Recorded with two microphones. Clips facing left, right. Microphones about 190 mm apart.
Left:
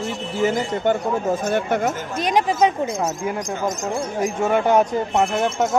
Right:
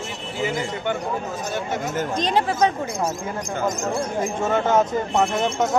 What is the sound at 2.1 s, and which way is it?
Speech, 15° left (ahead or behind).